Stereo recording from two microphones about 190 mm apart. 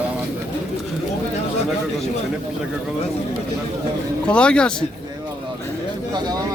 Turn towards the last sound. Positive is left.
turn(degrees=-20)  # may be behind; listen again after turning